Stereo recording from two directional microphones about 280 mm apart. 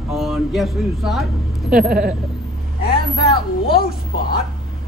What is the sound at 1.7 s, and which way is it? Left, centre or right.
Speech, right.